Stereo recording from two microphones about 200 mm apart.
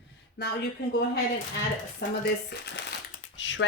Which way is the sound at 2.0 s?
55° left (ahead or behind).